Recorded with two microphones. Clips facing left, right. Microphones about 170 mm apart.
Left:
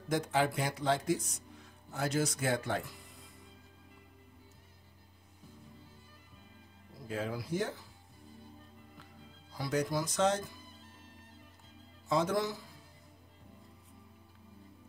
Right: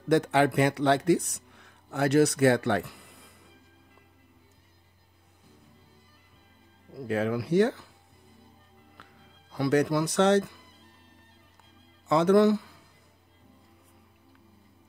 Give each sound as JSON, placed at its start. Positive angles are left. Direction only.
{"t": 0.1, "sound": "speech", "side_deg": -70}
{"t": 6.9, "sound": "speech", "side_deg": -70}
{"t": 8.9, "sound": "music", "side_deg": -65}
{"t": 12.1, "sound": "speech", "side_deg": -70}